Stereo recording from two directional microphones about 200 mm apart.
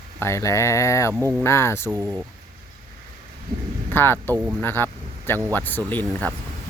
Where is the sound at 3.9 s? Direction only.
10° left (ahead or behind).